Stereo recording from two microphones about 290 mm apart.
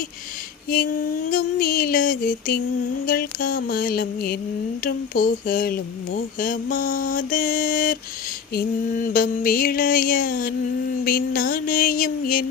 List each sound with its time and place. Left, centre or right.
0.7 s speech: left
3.1 s mantra: left
4.8 s speech: left